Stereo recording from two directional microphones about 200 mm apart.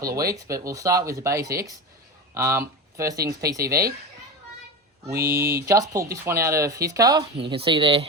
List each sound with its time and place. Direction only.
0.3 s speech: 15° right (ahead or behind)
5.2 s speech: 15° right (ahead or behind)